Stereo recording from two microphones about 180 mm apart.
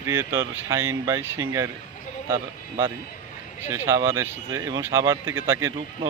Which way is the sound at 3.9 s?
15° right (ahead or behind).